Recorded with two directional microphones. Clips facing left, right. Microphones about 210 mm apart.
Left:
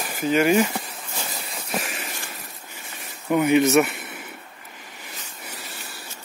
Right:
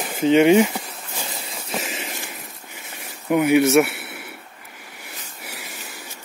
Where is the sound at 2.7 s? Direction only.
15° right (ahead or behind).